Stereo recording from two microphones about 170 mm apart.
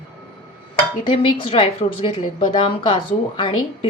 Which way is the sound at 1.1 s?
30° left (ahead or behind).